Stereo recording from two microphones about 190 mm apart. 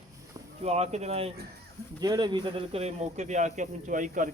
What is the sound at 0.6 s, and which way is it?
Speech, 35° right (ahead or behind).